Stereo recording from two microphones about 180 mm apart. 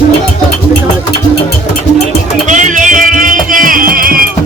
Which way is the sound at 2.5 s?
45° right (ahead or behind).